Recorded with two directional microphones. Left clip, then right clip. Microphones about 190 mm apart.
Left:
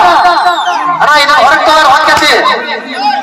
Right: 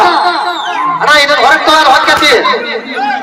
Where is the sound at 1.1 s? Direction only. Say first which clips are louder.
Even; 15° left (ahead or behind).